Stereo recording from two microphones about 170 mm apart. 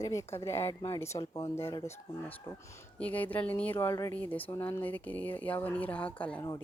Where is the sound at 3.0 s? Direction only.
10° left (ahead or behind).